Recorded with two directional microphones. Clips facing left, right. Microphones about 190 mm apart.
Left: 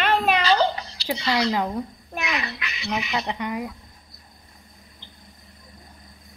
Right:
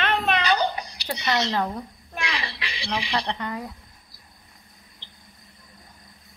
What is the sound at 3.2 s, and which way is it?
Speech, 10° left (ahead or behind).